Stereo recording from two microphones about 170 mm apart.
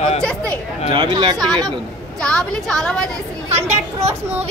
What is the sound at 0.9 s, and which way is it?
Speech, 25° right (ahead or behind).